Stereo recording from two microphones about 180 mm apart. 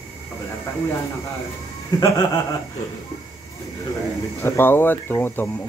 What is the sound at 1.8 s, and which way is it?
Speech, 20° left (ahead or behind).